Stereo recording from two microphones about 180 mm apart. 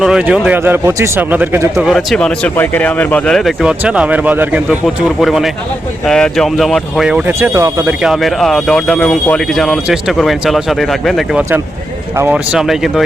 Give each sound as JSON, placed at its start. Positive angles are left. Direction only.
{"t": 0.0, "sound": "speech", "side_deg": -5}
{"t": 8.0, "sound": "speech", "side_deg": 0}